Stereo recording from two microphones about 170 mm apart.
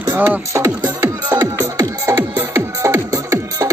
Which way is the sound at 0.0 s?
10° right (ahead or behind).